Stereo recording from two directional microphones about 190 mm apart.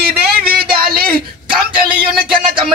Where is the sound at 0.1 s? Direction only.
55° right (ahead or behind).